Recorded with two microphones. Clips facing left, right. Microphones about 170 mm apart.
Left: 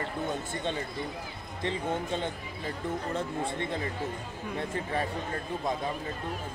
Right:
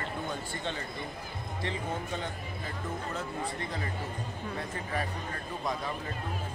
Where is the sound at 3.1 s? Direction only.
25° left (ahead or behind).